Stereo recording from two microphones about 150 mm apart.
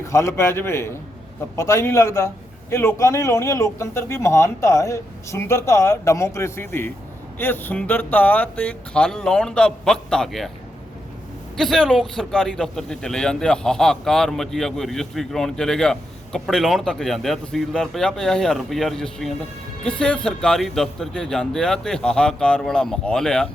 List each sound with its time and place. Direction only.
0.0 s a man's voice: 20° left (ahead or behind); by 10.5 s centre (ahead or behind)
11.5 s a man's voice: centre (ahead or behind)